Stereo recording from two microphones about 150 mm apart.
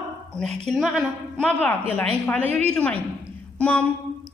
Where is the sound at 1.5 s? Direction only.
10° left (ahead or behind).